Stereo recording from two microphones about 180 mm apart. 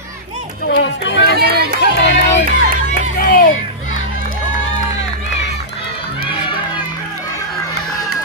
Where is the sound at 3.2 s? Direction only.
50° left (ahead or behind).